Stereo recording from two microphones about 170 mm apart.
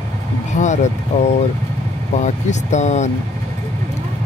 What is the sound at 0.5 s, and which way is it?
Speech, 45° left (ahead or behind).